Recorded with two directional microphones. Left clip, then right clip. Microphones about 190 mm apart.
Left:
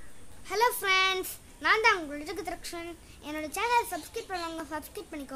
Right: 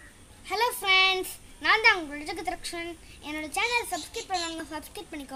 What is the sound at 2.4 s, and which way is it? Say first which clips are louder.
Speech: right 4 dB; 15° left (ahead or behind).